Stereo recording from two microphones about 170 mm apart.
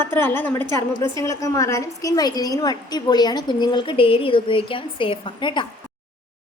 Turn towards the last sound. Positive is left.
turn(degrees=30)  # may be behind; listen again after turning